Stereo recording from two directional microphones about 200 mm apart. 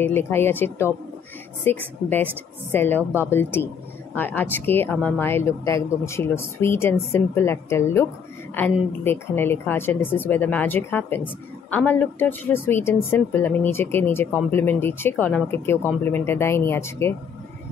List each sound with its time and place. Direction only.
0.0 s a woman's voice: 10° left (ahead or behind)